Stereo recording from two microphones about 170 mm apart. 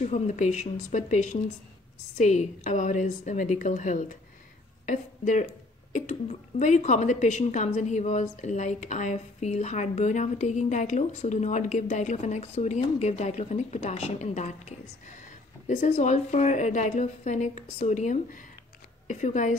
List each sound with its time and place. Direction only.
0.0 s a woman's voice: 40° left (ahead or behind)